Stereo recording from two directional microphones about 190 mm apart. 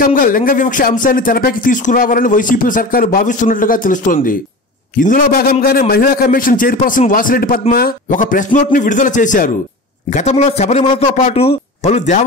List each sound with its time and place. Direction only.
0.0 s a man's voice: 50° left (ahead or behind)